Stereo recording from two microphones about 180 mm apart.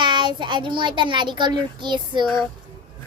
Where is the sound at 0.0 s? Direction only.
25° right (ahead or behind).